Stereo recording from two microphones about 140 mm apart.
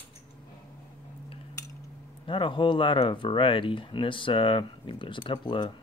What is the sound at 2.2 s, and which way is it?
Speech, 35° left (ahead or behind).